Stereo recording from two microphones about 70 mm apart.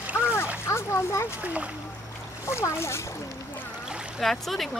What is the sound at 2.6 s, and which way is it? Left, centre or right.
Speech, left.